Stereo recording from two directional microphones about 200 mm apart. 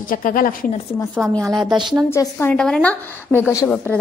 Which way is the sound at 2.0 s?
10° left (ahead or behind).